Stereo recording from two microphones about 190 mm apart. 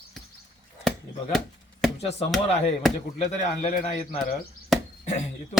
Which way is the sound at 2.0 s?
35° left (ahead or behind).